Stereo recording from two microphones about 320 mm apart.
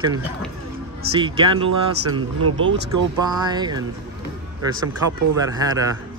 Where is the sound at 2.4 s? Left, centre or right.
Right.